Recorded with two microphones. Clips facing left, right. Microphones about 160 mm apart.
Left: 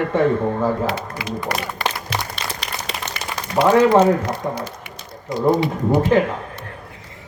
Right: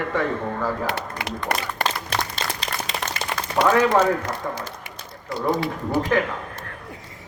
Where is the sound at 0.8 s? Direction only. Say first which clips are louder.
Left 3 dB; 60° right (ahead or behind).